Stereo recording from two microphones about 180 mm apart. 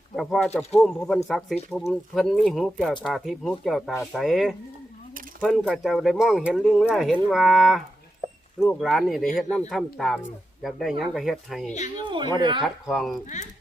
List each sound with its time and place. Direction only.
0.2 s speech: 5° left (ahead or behind)
8.2 s a sound: 20° right (ahead or behind)
8.5 s speech: centre (ahead or behind)
12.0 s speech: 25° right (ahead or behind)
12.6 s speech: centre (ahead or behind)
13.2 s speech: 40° left (ahead or behind)